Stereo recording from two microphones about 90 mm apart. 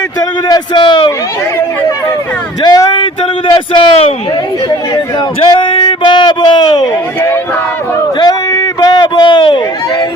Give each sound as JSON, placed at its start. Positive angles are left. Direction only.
{"t": 0.4, "sound": "speech", "side_deg": 45}
{"t": 0.8, "sound": "speech", "side_deg": 70}
{"t": 2.6, "sound": "speech", "side_deg": 50}
{"t": 2.9, "sound": "speech", "side_deg": 65}
{"t": 5.4, "sound": "a sound", "side_deg": 70}
{"t": 8.2, "sound": "a sound", "side_deg": 45}